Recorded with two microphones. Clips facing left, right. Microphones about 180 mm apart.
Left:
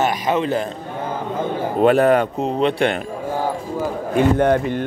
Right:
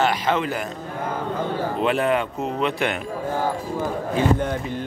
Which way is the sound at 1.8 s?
45° left (ahead or behind).